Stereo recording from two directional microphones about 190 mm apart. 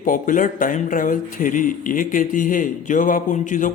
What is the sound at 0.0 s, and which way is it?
Speech, 45° left (ahead or behind).